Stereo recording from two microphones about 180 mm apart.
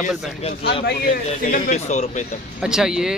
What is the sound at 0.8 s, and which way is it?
Speech, 50° left (ahead or behind).